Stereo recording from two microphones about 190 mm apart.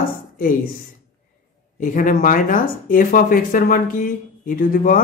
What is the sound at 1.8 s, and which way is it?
Speech, 45° left (ahead or behind).